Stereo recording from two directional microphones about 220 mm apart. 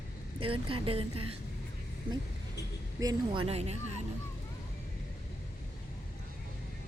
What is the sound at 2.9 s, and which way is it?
Speech, 20° right (ahead or behind).